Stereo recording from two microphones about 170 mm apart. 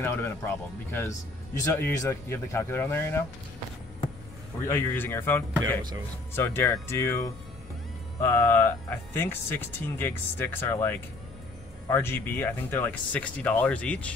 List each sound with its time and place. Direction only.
0.0 s speech: 15° left (ahead or behind)
4.6 s speech: 10° left (ahead or behind)
8.2 s speech: 15° left (ahead or behind)